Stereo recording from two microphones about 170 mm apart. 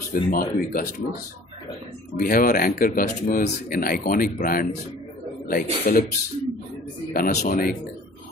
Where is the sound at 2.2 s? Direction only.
55° left (ahead or behind).